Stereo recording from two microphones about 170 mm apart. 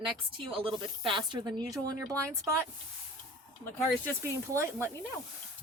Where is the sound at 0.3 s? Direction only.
30° right (ahead or behind).